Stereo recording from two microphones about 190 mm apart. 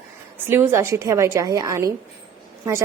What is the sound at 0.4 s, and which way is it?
A woman's voice, 10° right (ahead or behind).